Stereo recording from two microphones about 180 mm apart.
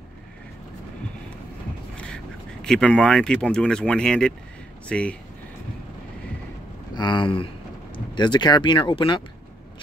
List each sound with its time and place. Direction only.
2.6 s speech: 5° left (ahead or behind)
7.0 s speech: 25° left (ahead or behind)